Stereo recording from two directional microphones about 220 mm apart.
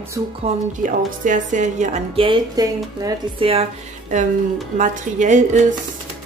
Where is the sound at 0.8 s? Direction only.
35° right (ahead or behind).